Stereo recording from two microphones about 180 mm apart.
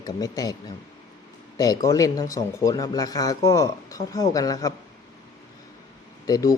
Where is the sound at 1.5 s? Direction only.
20° left (ahead or behind).